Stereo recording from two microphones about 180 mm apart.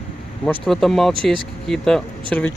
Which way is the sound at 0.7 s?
Centre (ahead or behind).